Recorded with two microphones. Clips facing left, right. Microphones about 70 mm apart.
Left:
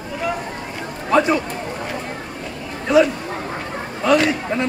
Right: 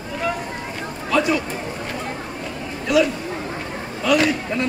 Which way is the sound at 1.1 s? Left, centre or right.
Left.